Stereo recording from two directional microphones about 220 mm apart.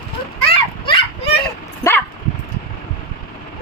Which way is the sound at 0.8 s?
25° left (ahead or behind).